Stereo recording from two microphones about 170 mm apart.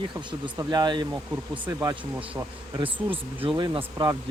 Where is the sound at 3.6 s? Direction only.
25° right (ahead or behind).